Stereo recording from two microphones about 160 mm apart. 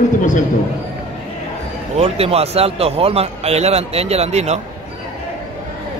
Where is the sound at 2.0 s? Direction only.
40° right (ahead or behind).